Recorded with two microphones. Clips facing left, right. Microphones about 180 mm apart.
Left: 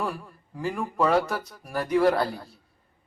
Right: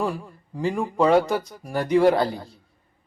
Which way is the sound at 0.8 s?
20° right (ahead or behind).